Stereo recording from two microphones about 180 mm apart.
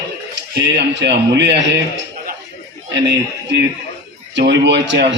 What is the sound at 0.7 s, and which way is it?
A man's voice, 75° right (ahead or behind).